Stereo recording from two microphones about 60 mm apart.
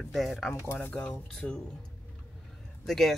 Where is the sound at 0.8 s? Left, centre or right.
Left.